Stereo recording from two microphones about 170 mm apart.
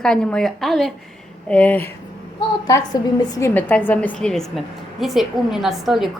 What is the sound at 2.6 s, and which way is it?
Speech, 20° left (ahead or behind).